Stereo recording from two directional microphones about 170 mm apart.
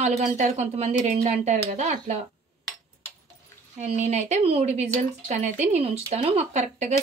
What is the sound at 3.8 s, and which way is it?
Speech, 40° right (ahead or behind).